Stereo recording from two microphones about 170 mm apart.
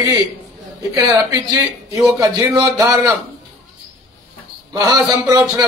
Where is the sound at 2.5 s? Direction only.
20° right (ahead or behind).